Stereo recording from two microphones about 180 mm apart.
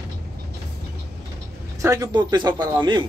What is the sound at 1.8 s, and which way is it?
Speech, 20° right (ahead or behind).